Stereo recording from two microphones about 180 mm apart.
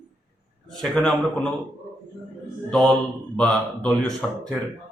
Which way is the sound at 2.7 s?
5° left (ahead or behind).